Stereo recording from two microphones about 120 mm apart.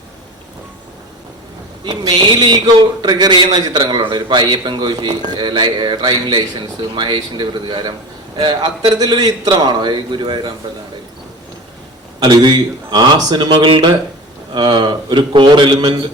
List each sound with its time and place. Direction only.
1.8 s a man's voice: 40° right (ahead or behind)
12.2 s a man's voice: 40° right (ahead or behind)